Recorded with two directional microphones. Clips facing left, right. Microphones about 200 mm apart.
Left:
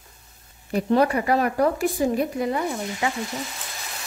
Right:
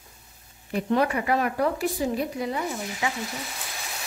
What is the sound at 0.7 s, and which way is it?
A woman's voice, 40° left (ahead or behind).